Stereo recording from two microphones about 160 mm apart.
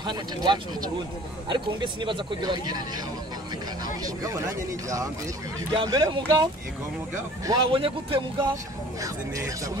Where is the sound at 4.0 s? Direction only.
20° right (ahead or behind).